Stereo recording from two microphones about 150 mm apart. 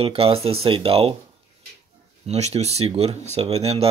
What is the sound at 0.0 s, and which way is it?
Speech, 40° right (ahead or behind).